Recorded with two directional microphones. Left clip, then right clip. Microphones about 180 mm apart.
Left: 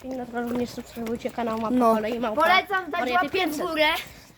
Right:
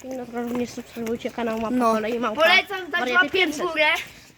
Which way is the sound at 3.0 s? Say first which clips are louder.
Right 6 dB; 30° right (ahead or behind).